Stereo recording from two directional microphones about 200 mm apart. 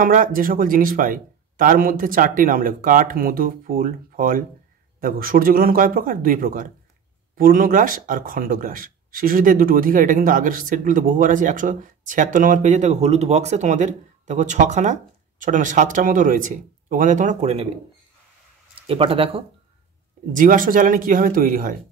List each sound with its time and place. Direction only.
0.0 s speech: 45° right (ahead or behind)
18.8 s speech: 25° right (ahead or behind)
20.3 s speech: 45° right (ahead or behind)